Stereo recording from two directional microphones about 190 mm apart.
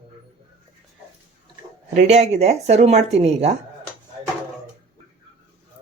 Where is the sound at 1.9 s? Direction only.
40° right (ahead or behind).